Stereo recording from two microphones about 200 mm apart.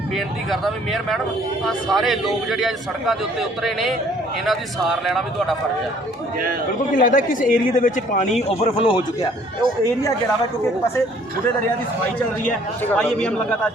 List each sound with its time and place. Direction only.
1.6 s a man's voice: centre (ahead or behind)
6.9 s a man's voice: 45° left (ahead or behind); by 9.0 s 25° left (ahead or behind)
12.8 s a man's voice: 10° left (ahead or behind)